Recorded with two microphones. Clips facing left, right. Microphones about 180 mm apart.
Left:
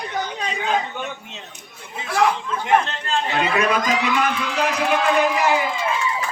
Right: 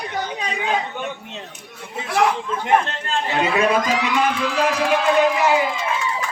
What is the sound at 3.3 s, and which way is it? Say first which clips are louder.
Speech: right 3 dB; 30° right (ahead or behind).